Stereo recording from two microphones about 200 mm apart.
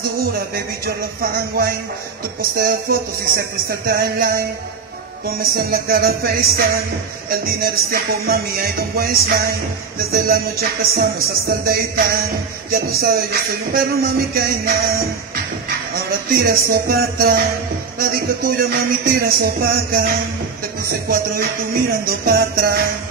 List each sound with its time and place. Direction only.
0.8 s speech: 50° right (ahead or behind)
16.1 s speech: 50° right (ahead or behind)